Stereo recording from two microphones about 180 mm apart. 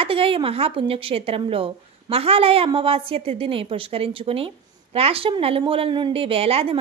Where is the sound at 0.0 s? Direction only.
30° right (ahead or behind).